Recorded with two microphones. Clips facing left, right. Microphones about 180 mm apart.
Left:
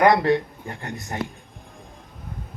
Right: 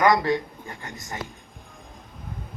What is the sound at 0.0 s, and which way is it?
A man's voice, 60° left (ahead or behind).